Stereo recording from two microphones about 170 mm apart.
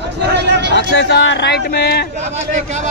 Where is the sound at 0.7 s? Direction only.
90° left; by 2.0 s 70° left (ahead or behind).